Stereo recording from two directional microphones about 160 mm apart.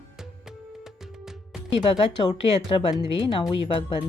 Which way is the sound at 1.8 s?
30° left (ahead or behind).